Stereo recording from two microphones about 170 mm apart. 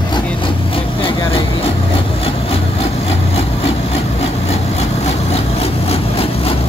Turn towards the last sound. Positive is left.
turn(degrees=35)  # may be behind; listen again after turning